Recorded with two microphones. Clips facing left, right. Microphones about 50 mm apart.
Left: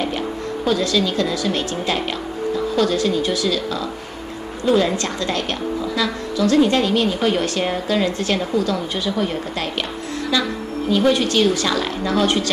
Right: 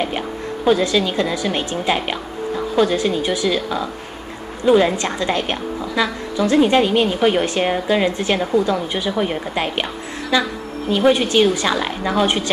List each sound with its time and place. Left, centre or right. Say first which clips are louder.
0.7 s a woman's voice: right 3 dB; right